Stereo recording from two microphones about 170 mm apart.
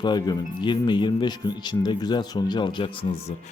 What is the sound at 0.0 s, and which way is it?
Speech, 25° left (ahead or behind).